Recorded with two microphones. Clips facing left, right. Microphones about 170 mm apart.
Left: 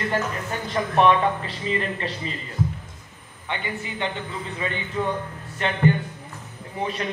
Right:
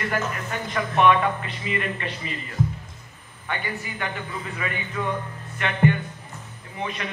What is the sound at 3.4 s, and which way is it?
A man's voice, 20° left (ahead or behind).